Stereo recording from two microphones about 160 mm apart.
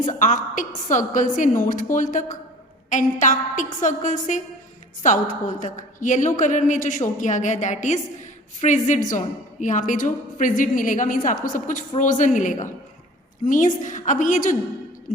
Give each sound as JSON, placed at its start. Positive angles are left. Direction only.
{"t": 0.1, "sound": "a woman's voice", "side_deg": 55}